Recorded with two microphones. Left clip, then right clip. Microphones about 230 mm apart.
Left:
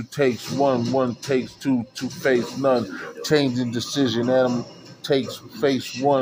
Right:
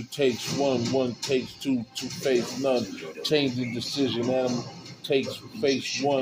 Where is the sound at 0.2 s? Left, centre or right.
Centre.